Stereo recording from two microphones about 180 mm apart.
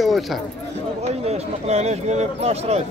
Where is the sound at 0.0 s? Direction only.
Centre (ahead or behind).